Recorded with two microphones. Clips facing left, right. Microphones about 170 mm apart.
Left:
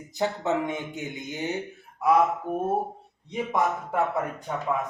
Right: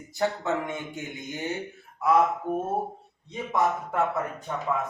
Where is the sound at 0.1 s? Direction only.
20° left (ahead or behind).